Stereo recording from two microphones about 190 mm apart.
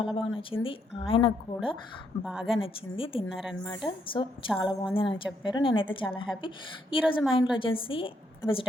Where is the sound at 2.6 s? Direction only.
30° left (ahead or behind).